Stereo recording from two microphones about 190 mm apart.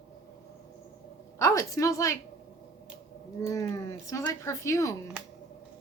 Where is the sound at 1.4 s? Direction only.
15° left (ahead or behind).